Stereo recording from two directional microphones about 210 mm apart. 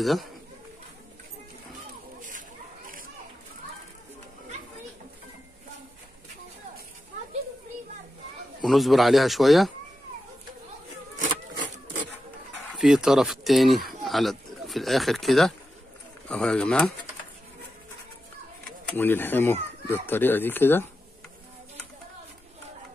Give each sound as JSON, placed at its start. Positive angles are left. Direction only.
{"t": 0.0, "sound": "speech", "side_deg": 0}
{"t": 8.6, "sound": "speech", "side_deg": 0}
{"t": 12.7, "sound": "speech", "side_deg": 0}
{"t": 18.9, "sound": "speech", "side_deg": 10}